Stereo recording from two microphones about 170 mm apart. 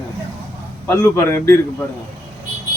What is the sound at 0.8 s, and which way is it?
Speech, 15° left (ahead or behind).